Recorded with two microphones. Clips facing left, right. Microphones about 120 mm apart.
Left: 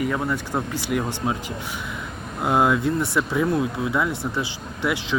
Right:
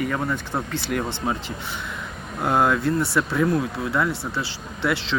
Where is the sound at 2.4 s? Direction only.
10° left (ahead or behind).